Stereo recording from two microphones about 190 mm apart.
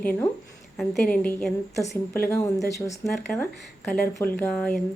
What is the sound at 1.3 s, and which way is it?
Speech, 5° left (ahead or behind).